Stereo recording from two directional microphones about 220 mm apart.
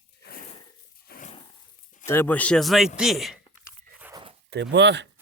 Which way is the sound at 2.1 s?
10° left (ahead or behind).